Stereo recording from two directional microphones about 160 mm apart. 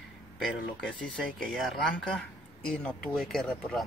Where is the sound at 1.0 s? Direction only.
5° left (ahead or behind).